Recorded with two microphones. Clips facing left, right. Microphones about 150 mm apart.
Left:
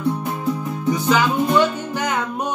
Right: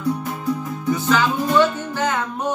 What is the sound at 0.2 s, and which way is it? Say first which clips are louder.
Music: left 1 dB; 20° left (ahead or behind).